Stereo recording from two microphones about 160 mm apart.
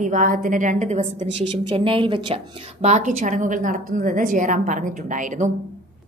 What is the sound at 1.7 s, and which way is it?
Speech, 35° right (ahead or behind).